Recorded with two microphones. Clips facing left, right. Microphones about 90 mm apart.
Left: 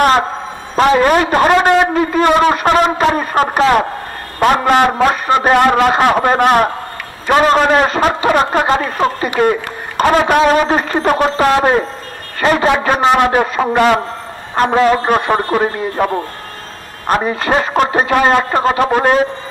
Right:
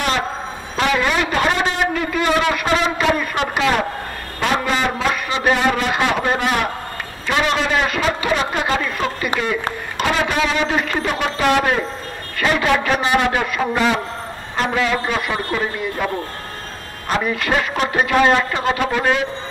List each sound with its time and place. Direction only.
0.7 s a man's voice: 40° left (ahead or behind)
1.5 s a man's voice: 65° left (ahead or behind)
2.0 s a man's voice: 35° left (ahead or behind)
4.4 s a man's voice: 50° left (ahead or behind)
8.3 s a man's voice: 45° left (ahead or behind)
13.7 s a man's voice: 55° left (ahead or behind)
14.5 s a man's voice: 45° left (ahead or behind)
17.2 s a man's voice: 35° left (ahead or behind)